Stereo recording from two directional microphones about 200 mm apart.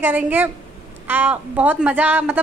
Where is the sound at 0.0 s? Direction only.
10° right (ahead or behind).